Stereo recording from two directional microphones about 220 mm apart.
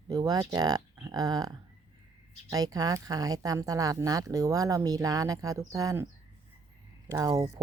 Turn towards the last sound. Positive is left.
turn(degrees=-15)  # may be behind; listen again after turning